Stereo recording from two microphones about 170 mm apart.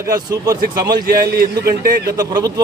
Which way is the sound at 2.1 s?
20° right (ahead or behind).